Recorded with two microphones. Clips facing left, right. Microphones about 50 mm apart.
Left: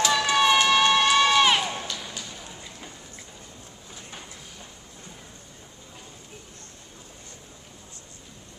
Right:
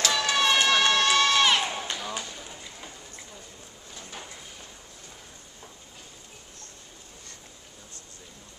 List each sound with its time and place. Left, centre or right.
0.0 s crowd: centre
1.9 s run: right